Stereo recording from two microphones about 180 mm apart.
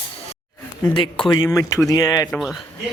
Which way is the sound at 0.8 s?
30° left (ahead or behind).